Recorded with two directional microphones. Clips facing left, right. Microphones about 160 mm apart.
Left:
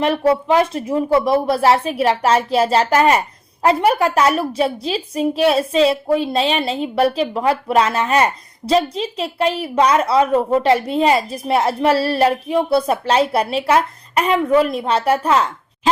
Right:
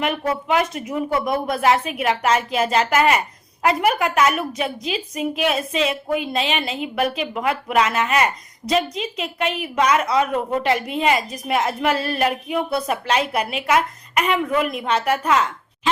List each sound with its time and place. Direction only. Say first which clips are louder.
0.0 s speech: left 7 dB; 30° left (ahead or behind)